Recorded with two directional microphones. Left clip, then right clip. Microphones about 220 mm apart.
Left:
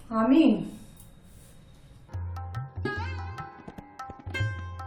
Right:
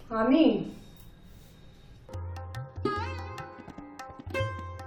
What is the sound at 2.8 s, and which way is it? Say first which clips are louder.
Tabla: right 2 dB; centre (ahead or behind).